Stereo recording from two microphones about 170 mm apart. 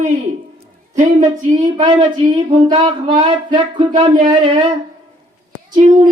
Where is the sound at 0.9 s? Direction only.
45° right (ahead or behind).